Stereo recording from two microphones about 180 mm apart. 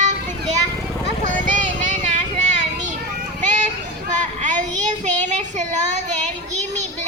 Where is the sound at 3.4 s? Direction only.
45° right (ahead or behind).